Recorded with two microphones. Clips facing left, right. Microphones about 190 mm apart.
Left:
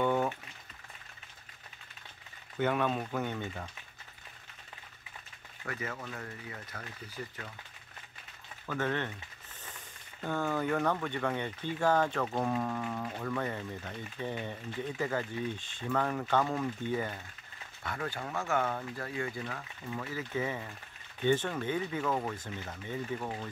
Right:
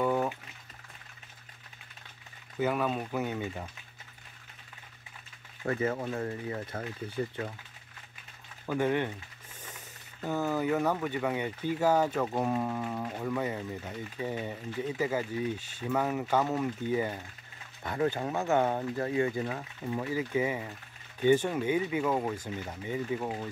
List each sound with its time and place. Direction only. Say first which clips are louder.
0.0 s boiling: right 1 dB; 5° right (ahead or behind)
2.6 s speech: right 1 dB; 5° right (ahead or behind)
5.7 s speech: right 9 dB; 30° right (ahead or behind)
8.6 s speech: right 5 dB; 15° right (ahead or behind)